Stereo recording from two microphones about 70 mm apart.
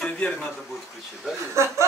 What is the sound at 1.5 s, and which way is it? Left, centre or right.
Speech, right.